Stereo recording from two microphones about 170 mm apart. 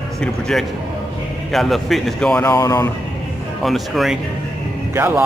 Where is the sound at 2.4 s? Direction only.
20° left (ahead or behind).